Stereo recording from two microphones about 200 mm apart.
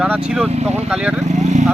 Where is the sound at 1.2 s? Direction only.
35° right (ahead or behind).